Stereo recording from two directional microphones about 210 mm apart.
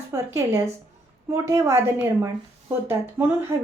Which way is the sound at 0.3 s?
15° right (ahead or behind).